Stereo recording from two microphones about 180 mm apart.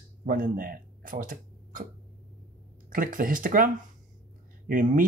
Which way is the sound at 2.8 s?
50° right (ahead or behind).